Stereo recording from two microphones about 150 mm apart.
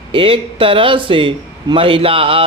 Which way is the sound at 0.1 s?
35° right (ahead or behind).